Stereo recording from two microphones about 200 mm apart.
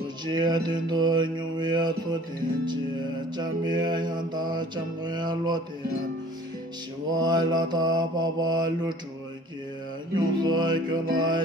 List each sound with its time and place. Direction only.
0.2 s mantra: 20° right (ahead or behind)
3.6 s mantra: 20° right (ahead or behind)
7.1 s mantra: 20° right (ahead or behind)
10.1 s mantra: 20° right (ahead or behind)